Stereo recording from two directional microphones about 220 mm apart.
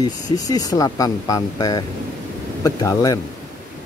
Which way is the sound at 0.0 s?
15° left (ahead or behind).